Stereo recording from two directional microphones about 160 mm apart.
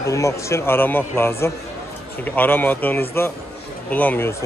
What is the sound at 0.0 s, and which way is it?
A man's voice, 20° left (ahead or behind).